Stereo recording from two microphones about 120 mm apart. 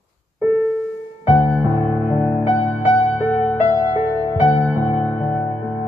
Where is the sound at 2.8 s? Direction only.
45° left (ahead or behind).